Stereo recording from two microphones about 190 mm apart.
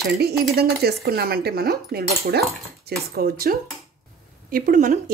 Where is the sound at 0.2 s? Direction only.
55° right (ahead or behind).